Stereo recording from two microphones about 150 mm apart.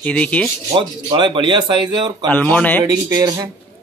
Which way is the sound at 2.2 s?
10° left (ahead or behind).